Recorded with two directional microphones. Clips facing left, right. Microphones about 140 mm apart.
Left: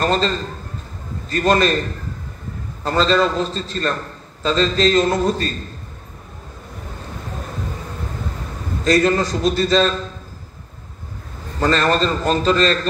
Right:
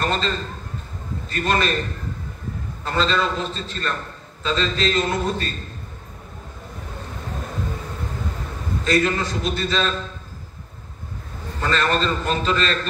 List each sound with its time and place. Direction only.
0.0 s a man's voice: 40° left (ahead or behind)
1.3 s a man's voice: 40° left (ahead or behind)
2.8 s a man's voice: 40° left (ahead or behind)
8.8 s a man's voice: 40° left (ahead or behind)
11.6 s a man's voice: 35° left (ahead or behind)